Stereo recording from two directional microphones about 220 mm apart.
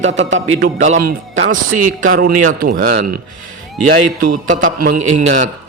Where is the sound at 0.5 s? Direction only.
30° right (ahead or behind).